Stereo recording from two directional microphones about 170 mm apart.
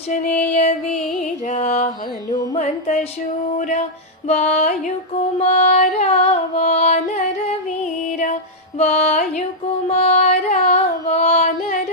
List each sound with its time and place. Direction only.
0.1 s music: 45° left (ahead or behind)
2.3 s music: 20° left (ahead or behind)
2.6 s music: 40° left (ahead or behind)
8.8 s music: 40° left (ahead or behind)
11.1 s child singing: 40° left (ahead or behind)